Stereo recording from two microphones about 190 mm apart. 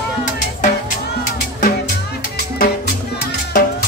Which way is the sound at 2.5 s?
50° left (ahead or behind).